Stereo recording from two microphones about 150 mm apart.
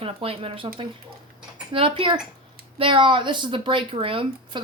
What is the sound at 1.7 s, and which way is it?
Speech, 35° right (ahead or behind).